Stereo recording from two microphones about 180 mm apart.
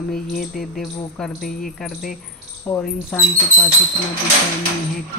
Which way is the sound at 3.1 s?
5° left (ahead or behind).